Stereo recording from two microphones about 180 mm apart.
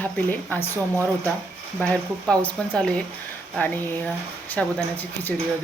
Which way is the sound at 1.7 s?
5° left (ahead or behind).